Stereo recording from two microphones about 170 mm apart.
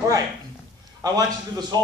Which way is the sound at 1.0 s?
20° right (ahead or behind).